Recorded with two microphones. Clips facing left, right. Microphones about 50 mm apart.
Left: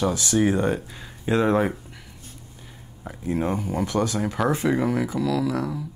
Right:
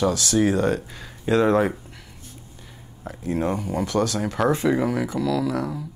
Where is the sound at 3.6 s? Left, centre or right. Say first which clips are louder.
Right 1 dB; left.